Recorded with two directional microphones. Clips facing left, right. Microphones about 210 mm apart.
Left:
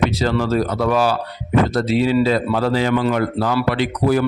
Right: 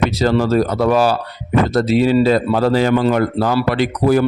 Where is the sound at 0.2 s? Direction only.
40° right (ahead or behind).